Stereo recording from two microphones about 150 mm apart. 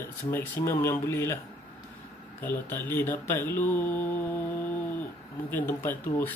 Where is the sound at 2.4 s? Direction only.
15° left (ahead or behind).